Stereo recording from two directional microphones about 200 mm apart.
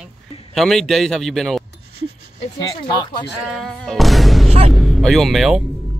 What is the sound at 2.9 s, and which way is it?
Speech, 20° left (ahead or behind).